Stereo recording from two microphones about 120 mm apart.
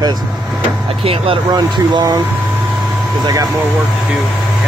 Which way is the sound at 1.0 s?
50° right (ahead or behind).